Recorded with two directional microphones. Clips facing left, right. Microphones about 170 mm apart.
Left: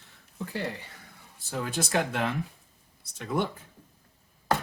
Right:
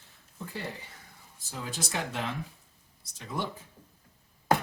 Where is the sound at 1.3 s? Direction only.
60° left (ahead or behind).